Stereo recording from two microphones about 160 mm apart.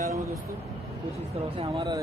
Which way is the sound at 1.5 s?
30° right (ahead or behind).